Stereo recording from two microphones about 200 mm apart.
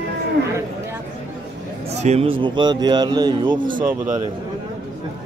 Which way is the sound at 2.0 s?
35° right (ahead or behind).